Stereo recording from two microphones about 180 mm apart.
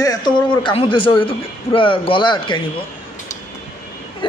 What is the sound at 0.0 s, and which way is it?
A man's voice, 20° left (ahead or behind).